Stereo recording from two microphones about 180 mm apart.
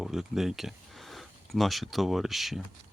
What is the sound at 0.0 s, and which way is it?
Speech, centre (ahead or behind).